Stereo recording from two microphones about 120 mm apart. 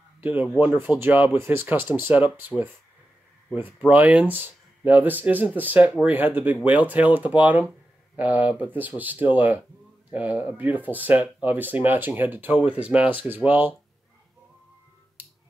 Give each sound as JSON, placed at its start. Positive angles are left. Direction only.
{"t": 0.2, "sound": "speech", "side_deg": -15}
{"t": 15.2, "sound": "finger snapping", "side_deg": -15}